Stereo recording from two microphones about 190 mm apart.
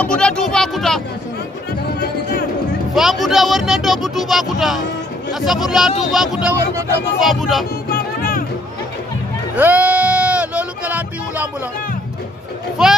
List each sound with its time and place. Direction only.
0.0 s speech: 5° left (ahead or behind)
2.0 s music: 55° left (ahead or behind)
2.9 s speech: centre (ahead or behind)
7.9 s music: 50° left (ahead or behind)
9.6 s a sound: 10° right (ahead or behind)